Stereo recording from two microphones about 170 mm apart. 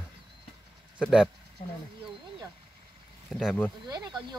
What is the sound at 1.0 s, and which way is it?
Speech, 5° right (ahead or behind).